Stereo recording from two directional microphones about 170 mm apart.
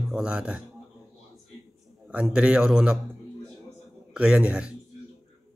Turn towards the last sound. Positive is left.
turn(degrees=-5)  # may be behind; listen again after turning